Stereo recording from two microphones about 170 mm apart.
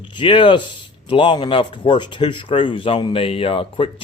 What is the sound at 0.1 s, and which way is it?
Speech, 30° left (ahead or behind).